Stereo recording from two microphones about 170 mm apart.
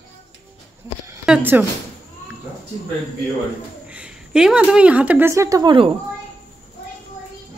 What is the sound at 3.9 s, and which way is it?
A woman's voice, 5° right (ahead or behind).